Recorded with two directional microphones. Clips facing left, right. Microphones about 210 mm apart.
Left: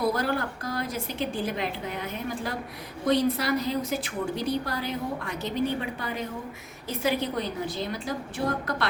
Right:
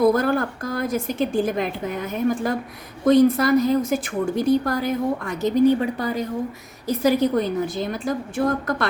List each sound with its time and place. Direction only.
0.0 s a woman's voice: 50° right (ahead or behind)